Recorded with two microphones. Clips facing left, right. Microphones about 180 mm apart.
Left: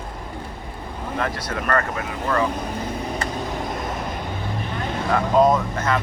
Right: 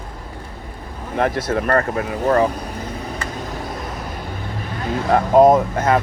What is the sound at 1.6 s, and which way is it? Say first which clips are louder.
Speech: even; 35° right (ahead or behind).